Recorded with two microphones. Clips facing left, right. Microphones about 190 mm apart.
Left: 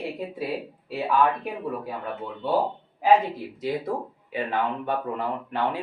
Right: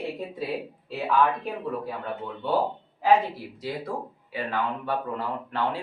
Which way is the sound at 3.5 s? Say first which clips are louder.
Left 5 dB; 20° left (ahead or behind).